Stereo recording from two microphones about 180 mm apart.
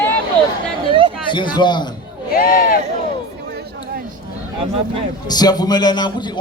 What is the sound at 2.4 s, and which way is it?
Speech, 50° left (ahead or behind).